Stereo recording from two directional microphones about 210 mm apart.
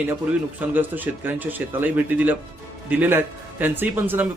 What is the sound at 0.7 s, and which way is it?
Speech, 10° right (ahead or behind).